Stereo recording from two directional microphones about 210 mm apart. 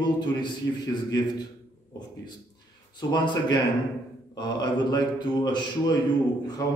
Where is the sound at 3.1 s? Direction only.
20° left (ahead or behind).